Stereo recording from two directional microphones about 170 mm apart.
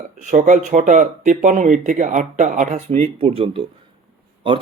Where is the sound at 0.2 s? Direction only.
50° right (ahead or behind).